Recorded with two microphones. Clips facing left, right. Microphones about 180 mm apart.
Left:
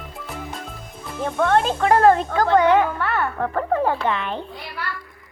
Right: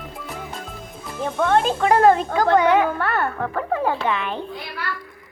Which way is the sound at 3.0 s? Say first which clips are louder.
Right 1 dB; 45° right (ahead or behind).